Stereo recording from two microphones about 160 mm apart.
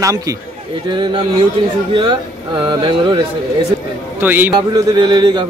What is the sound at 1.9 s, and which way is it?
Speech, 30° right (ahead or behind).